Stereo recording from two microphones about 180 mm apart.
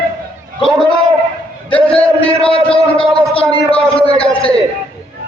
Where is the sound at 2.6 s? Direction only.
5° left (ahead or behind).